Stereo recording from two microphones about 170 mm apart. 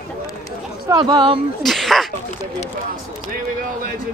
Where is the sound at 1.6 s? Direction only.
Centre (ahead or behind).